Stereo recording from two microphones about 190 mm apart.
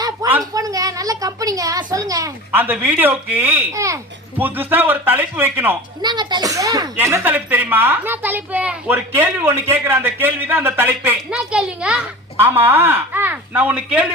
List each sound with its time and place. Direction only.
0.0 s a woman's voice: 15° right (ahead or behind)
6.0 s a woman's voice: 20° right (ahead or behind); by 14.1 s 5° right (ahead or behind)